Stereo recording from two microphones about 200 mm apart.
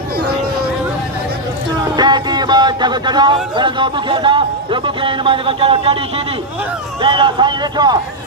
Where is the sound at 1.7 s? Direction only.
20° right (ahead or behind).